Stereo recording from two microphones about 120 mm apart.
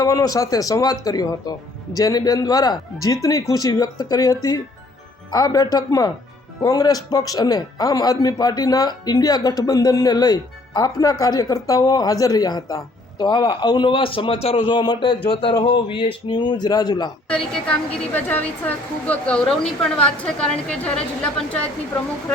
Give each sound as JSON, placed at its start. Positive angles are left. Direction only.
{"t": 0.0, "sound": "speech", "side_deg": 30}
{"t": 14.7, "sound": "speech", "side_deg": 35}
{"t": 17.2, "sound": "a woman's voice", "side_deg": 10}